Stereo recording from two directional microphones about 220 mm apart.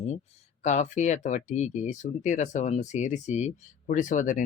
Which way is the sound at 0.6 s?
30° left (ahead or behind).